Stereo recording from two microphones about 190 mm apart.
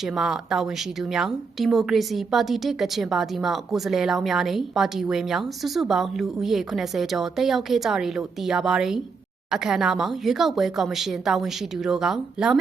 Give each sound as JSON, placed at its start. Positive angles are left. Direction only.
{"t": 0.0, "sound": "a woman's voice", "side_deg": 0}